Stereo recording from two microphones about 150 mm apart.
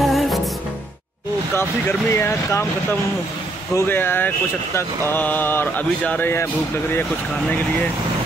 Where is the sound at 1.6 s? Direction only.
15° left (ahead or behind).